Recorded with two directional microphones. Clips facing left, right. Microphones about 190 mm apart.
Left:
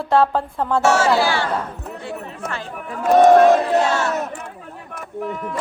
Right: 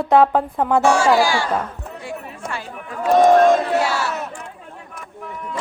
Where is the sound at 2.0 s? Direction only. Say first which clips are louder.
Left 1 dB; 10° right (ahead or behind).